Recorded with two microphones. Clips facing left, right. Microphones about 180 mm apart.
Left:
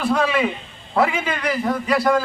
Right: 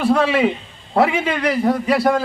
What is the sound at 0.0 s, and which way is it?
Speech, 30° right (ahead or behind).